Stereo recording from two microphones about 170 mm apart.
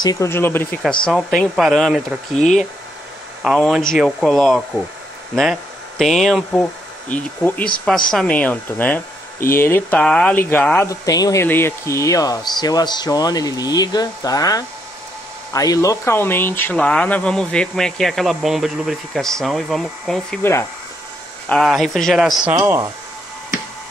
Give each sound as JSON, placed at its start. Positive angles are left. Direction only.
{"t": 0.0, "sound": "speech", "side_deg": 20}
{"t": 3.4, "sound": "speech", "side_deg": 0}
{"t": 10.9, "sound": "speech", "side_deg": 20}
{"t": 21.5, "sound": "speech", "side_deg": 0}
{"t": 22.6, "sound": "speech", "side_deg": -20}